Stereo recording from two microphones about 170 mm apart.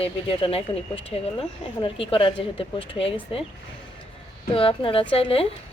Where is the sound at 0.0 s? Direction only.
35° left (ahead or behind).